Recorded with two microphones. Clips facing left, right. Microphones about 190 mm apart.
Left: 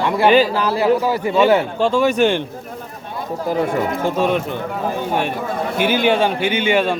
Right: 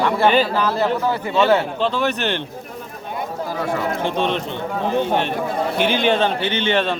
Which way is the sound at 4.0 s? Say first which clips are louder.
Left 3 dB; 5° left (ahead or behind).